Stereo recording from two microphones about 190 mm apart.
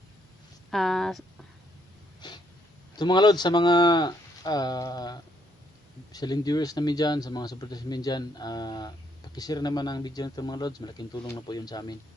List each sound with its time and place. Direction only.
0.7 s speech: centre (ahead or behind)
2.2 s snort: 20° left (ahead or behind)
3.0 s speech: 20° left (ahead or behind)